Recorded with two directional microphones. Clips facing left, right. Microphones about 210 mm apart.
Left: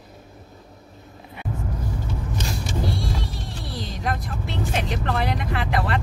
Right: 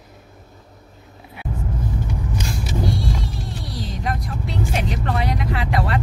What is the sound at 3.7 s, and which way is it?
Vehicle, centre (ahead or behind).